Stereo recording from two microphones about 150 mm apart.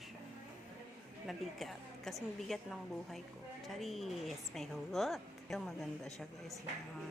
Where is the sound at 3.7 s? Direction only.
Centre (ahead or behind).